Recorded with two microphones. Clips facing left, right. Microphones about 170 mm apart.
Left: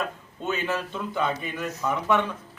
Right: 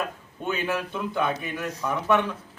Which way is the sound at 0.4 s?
15° right (ahead or behind).